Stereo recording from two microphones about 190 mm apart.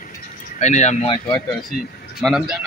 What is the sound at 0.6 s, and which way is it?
Speech, 35° left (ahead or behind).